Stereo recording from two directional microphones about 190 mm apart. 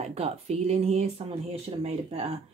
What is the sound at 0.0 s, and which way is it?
Speech, 35° right (ahead or behind).